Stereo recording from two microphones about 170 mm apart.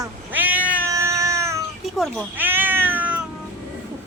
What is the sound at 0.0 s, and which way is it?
Cat, 10° right (ahead or behind).